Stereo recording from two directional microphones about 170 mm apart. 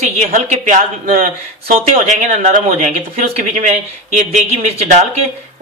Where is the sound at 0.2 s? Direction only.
45° right (ahead or behind).